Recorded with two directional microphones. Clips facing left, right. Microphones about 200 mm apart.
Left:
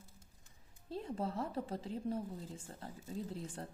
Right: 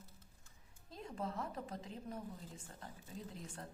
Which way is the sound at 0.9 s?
30° left (ahead or behind).